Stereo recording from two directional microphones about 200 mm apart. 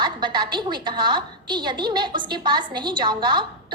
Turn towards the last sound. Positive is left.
turn(degrees=-25)  # may be behind; listen again after turning